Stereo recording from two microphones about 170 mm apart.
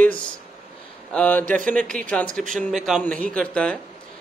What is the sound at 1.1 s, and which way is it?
Speech, 10° left (ahead or behind).